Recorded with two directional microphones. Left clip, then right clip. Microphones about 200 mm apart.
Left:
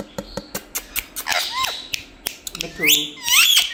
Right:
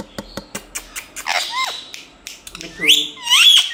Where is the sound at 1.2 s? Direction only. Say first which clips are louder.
Right 2 dB; 20° right (ahead or behind).